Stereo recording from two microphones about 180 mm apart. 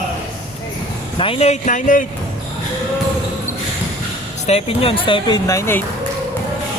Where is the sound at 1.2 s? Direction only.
35° left (ahead or behind).